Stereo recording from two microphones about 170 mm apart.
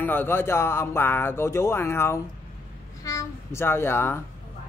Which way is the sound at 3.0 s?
20° left (ahead or behind).